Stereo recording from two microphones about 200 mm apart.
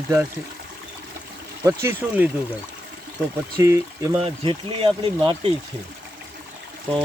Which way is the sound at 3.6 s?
15° right (ahead or behind).